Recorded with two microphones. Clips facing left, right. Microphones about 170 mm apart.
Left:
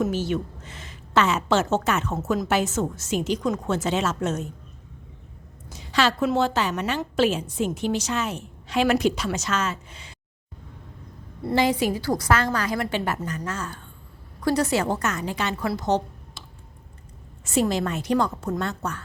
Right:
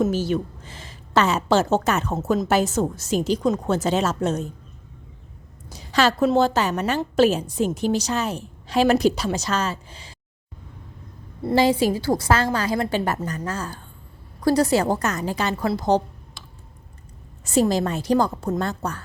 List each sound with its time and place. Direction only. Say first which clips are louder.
0.1 s a woman's voice: right 3 dB; 40° right (ahead or behind)
5.6 s a woman's voice: right 3 dB; 40° right (ahead or behind)
11.4 s a woman's voice: right 3 dB; 30° right (ahead or behind)
17.4 s a woman's voice: right 3 dB; 35° right (ahead or behind)